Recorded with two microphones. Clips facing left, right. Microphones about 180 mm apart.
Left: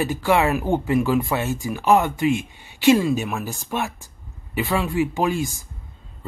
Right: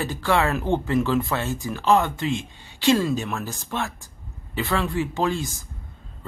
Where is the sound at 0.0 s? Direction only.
15° left (ahead or behind).